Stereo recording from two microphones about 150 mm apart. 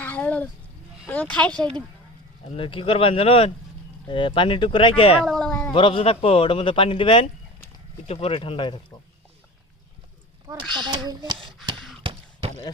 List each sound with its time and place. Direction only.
0.0 s a sound: 10° left (ahead or behind)
1.0 s speech: 10° left (ahead or behind)
2.5 s a man's voice: 35° left (ahead or behind)
5.2 s cat: 5° left (ahead or behind)
5.7 s a man's voice: 35° left (ahead or behind)
10.8 s speech: 30° right (ahead or behind)
11.4 s a sound: 30° right (ahead or behind)